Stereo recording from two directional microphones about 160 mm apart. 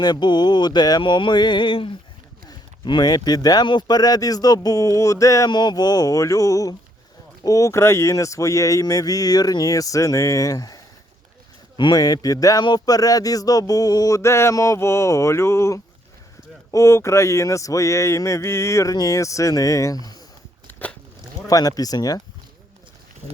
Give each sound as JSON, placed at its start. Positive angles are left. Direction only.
{"t": 0.0, "sound": "speech", "side_deg": 25}
{"t": 11.8, "sound": "speech", "side_deg": 25}
{"t": 20.7, "sound": "a sound", "side_deg": 10}
{"t": 21.4, "sound": "speech", "side_deg": 20}